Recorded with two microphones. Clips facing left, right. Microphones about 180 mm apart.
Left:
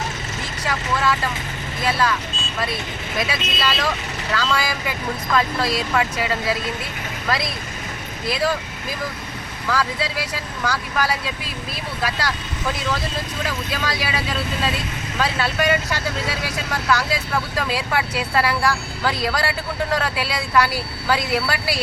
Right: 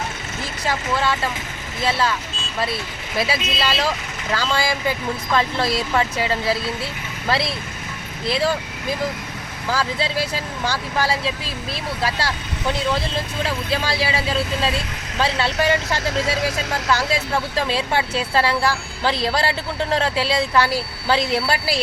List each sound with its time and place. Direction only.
0.7 s speech: 25° right (ahead or behind)
3.2 s speech: 30° right (ahead or behind)
9.6 s speech: 25° right (ahead or behind)
16.9 s speech: 25° right (ahead or behind)